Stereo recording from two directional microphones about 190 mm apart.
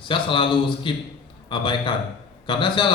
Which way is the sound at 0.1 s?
25° left (ahead or behind).